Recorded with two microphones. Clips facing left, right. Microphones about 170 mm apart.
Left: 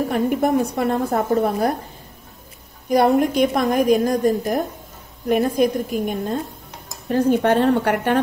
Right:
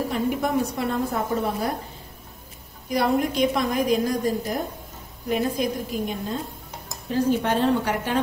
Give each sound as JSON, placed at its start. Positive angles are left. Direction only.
{"t": 0.1, "sound": "a woman's voice", "side_deg": 50}
{"t": 2.9, "sound": "a woman's voice", "side_deg": 50}